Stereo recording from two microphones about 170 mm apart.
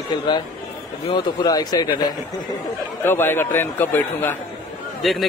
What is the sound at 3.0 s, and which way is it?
A man's voice, 15° left (ahead or behind).